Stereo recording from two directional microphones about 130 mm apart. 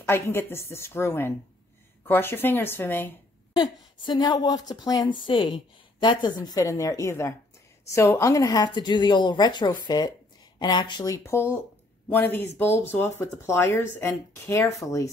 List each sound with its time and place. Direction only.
0.0 s a woman's voice: 15° left (ahead or behind)
3.5 s a woman's voice: 35° left (ahead or behind)
11.2 s a woman's voice: 20° left (ahead or behind)